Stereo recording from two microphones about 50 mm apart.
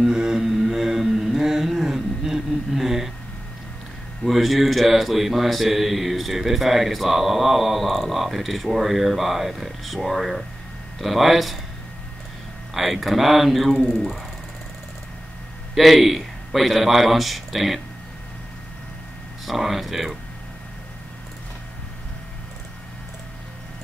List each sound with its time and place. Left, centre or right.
0.0 s humming: centre
4.2 s a man's voice: centre
12.7 s a man's voice: centre
15.7 s speech: centre
19.4 s a man's voice: centre